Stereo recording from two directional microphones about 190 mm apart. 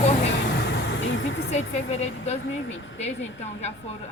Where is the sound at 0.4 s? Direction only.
65° left (ahead or behind); by 1.5 s 80° left.